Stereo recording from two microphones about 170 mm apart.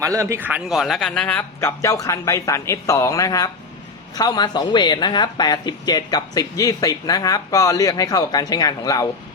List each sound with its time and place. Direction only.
0.0 s a man's voice: 20° right (ahead or behind); by 9.0 s 20° left (ahead or behind)